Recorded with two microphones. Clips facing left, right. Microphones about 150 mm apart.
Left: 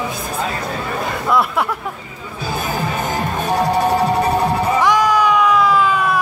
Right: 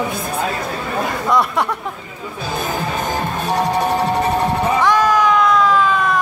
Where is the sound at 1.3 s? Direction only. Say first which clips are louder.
Even; centre (ahead or behind).